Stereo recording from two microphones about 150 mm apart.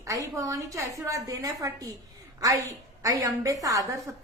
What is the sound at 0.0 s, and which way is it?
A woman's voice, 20° right (ahead or behind).